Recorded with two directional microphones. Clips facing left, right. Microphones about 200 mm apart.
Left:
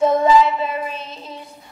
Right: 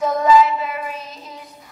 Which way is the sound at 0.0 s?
25° left (ahead or behind).